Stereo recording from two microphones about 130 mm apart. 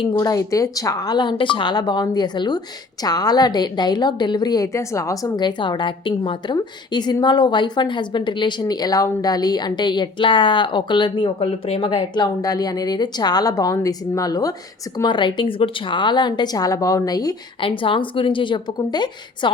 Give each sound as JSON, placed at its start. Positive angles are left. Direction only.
{"t": 0.1, "sound": "a woman's voice", "side_deg": 25}
{"t": 11.3, "sound": "a woman's voice", "side_deg": 50}
{"t": 17.6, "sound": "a woman's voice", "side_deg": 40}